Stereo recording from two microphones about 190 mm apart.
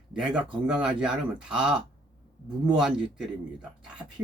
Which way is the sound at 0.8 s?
5° right (ahead or behind).